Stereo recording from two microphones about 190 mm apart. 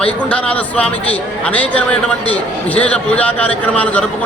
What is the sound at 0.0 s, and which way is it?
A man's voice, 5° left (ahead or behind).